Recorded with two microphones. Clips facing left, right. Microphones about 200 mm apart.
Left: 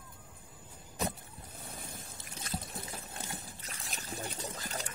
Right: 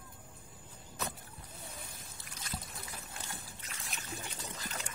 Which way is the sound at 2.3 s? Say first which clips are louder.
Left 4 dB; 25° left (ahead or behind).